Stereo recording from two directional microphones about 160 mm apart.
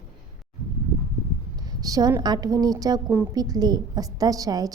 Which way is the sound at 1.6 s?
25° right (ahead or behind).